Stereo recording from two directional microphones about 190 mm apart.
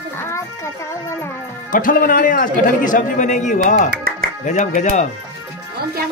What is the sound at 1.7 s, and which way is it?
A man's voice, 45° left (ahead or behind).